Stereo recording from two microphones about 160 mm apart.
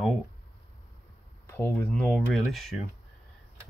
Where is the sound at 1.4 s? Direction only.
15° left (ahead or behind).